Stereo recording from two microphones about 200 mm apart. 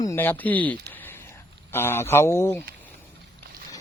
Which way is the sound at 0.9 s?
10° left (ahead or behind).